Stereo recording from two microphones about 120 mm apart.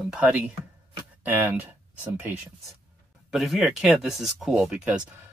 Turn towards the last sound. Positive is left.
turn(degrees=-5)  # may be behind; listen again after turning